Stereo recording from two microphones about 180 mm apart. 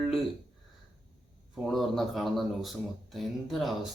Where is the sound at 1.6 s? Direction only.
Centre (ahead or behind).